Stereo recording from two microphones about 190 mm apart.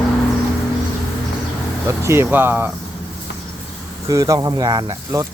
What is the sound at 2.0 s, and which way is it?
Speech, 15° right (ahead or behind).